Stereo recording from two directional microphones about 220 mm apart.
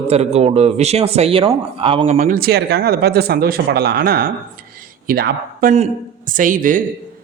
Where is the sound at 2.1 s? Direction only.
40° right (ahead or behind).